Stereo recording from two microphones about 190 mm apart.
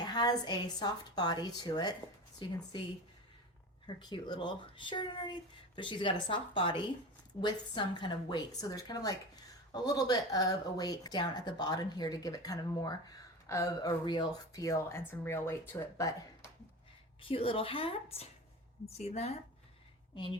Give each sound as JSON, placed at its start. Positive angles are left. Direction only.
{"t": 0.0, "sound": "a woman's voice", "side_deg": 20}
{"t": 3.8, "sound": "a woman's voice", "side_deg": 25}
{"t": 17.2, "sound": "a woman's voice", "side_deg": 30}